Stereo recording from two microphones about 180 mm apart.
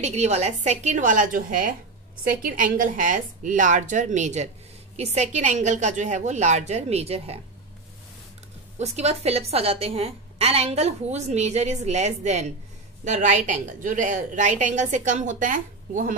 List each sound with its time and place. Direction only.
0.0 s a woman's voice: 40° right (ahead or behind)
8.7 s a woman's voice: 35° right (ahead or behind)